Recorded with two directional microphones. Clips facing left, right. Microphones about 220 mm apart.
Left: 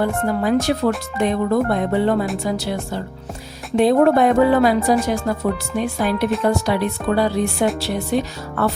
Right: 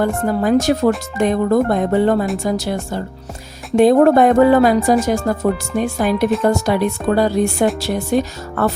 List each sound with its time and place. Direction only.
0.4 s speech: 45° right (ahead or behind)